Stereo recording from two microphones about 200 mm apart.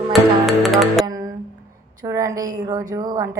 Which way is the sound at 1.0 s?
20° right (ahead or behind).